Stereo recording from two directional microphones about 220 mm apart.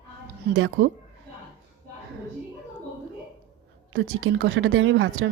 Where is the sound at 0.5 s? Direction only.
55° right (ahead or behind).